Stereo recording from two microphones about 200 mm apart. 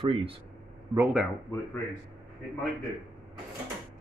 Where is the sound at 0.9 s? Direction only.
10° right (ahead or behind).